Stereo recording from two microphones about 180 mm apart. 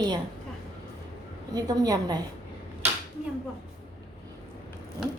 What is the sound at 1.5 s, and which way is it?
Speech, 20° right (ahead or behind).